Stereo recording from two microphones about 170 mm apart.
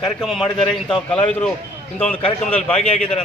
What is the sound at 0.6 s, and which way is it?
Speech, 30° left (ahead or behind).